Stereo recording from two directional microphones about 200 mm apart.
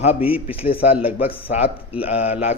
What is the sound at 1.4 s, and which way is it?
A man's voice, 30° left (ahead or behind).